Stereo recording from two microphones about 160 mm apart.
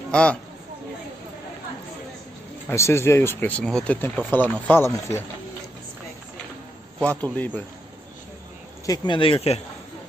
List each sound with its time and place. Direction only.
0.1 s speech: 5° left (ahead or behind)
2.7 s speech: 15° left (ahead or behind)
7.3 s speech: 10° left (ahead or behind)
8.8 s speech: 25° left (ahead or behind)